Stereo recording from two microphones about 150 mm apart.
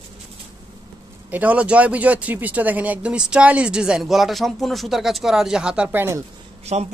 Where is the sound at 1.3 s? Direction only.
10° right (ahead or behind).